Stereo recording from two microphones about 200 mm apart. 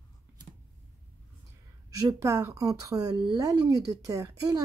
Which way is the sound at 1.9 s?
15° right (ahead or behind).